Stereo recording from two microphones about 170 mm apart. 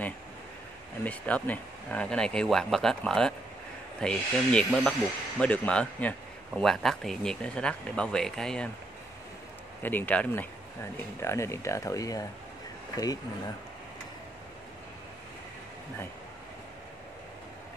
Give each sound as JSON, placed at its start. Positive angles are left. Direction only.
{"t": 1.0, "sound": "speech", "side_deg": 10}
{"t": 9.8, "sound": "speech", "side_deg": 10}